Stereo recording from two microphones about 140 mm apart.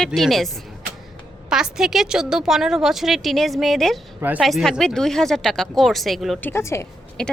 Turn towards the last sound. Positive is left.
turn(degrees=5)  # may be behind; listen again after turning